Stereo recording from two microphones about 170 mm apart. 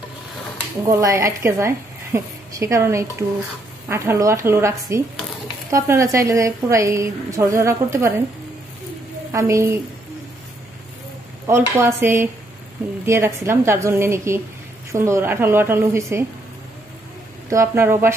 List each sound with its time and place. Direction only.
0.8 s a woman's voice: 20° right (ahead or behind)
9.3 s a woman's voice: 15° right (ahead or behind)
11.4 s a woman's voice: 15° right (ahead or behind)
17.5 s a woman's voice: 15° right (ahead or behind)